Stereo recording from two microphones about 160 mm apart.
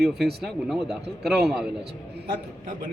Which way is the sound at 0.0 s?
Centre (ahead or behind).